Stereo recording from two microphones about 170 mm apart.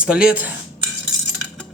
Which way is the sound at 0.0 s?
5° right (ahead or behind).